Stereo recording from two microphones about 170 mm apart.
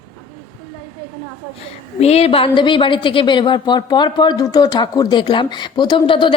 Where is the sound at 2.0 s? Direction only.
35° left (ahead or behind).